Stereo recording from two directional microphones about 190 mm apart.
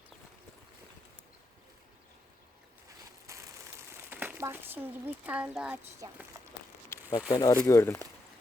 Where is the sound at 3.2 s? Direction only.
15° right (ahead or behind).